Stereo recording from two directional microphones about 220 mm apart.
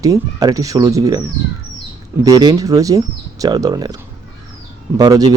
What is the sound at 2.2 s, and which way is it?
Speech, 15° right (ahead or behind).